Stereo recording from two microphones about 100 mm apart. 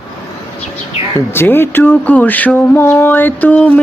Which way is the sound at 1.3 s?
20° left (ahead or behind).